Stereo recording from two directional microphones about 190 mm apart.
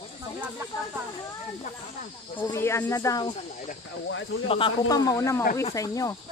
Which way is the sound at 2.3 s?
20° left (ahead or behind).